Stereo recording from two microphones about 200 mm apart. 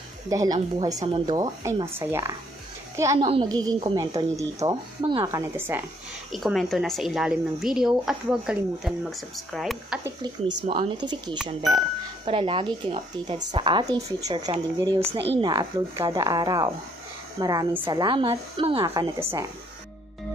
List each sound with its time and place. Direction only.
0.3 s speech: 20° right (ahead or behind)
6.3 s speech: centre (ahead or behind)
10.0 s speech: 25° right (ahead or behind)